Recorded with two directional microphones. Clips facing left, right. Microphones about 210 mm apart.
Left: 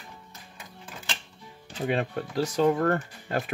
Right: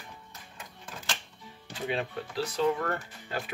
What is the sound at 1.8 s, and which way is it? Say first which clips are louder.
Speech: left 5 dB; 50° left (ahead or behind).